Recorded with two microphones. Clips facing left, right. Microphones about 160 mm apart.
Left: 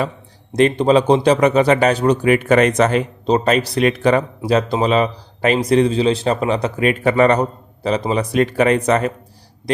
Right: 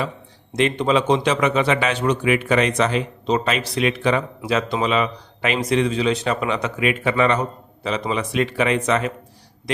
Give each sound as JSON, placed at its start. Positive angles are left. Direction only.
{"t": 0.5, "sound": "a man's voice", "side_deg": 40}